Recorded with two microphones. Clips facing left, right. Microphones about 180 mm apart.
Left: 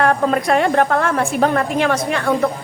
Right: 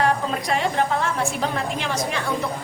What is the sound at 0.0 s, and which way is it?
A woman's voice, 60° left (ahead or behind).